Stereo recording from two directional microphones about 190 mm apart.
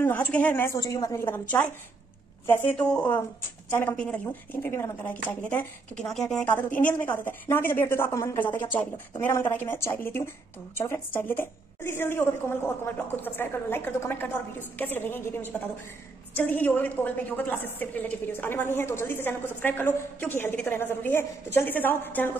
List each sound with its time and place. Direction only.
0.0 s a woman's voice: 10° left (ahead or behind)